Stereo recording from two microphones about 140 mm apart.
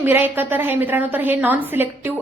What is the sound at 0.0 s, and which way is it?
A woman's voice, 15° right (ahead or behind).